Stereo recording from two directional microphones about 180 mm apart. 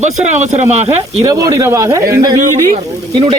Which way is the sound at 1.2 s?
20° right (ahead or behind).